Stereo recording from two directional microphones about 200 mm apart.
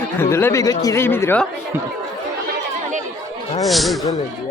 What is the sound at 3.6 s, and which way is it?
Speech, centre (ahead or behind).